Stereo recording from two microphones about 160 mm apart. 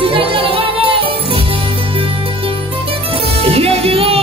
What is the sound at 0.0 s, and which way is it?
Music, 35° right (ahead or behind).